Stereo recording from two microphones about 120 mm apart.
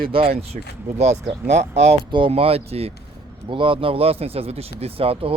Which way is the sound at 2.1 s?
50° right (ahead or behind).